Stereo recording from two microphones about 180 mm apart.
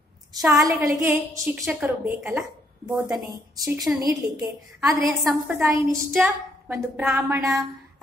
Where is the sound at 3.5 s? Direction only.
20° right (ahead or behind).